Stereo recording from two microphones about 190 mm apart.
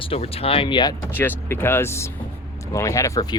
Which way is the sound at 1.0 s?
10° left (ahead or behind).